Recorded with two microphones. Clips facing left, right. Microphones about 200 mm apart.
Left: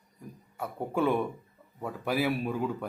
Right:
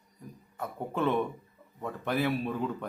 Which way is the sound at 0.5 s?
10° left (ahead or behind).